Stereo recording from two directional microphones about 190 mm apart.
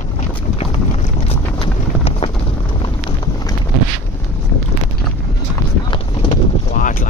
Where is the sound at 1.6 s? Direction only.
30° left (ahead or behind).